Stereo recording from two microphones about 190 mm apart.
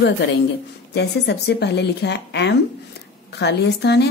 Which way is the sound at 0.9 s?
60° left (ahead or behind).